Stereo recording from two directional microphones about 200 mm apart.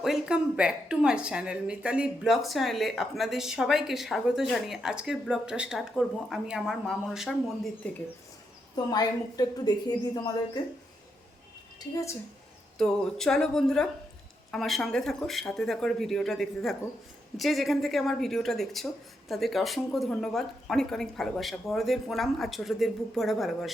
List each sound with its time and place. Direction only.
0.0 s speech: 5° right (ahead or behind)
8.7 s a woman's voice: 20° left (ahead or behind)
12.7 s speech: 5° left (ahead or behind)